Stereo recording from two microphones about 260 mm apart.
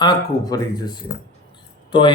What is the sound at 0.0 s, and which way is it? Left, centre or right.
Speech, centre.